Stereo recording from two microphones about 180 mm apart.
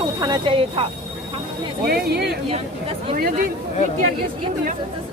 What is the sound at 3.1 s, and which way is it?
Speech, 50° right (ahead or behind).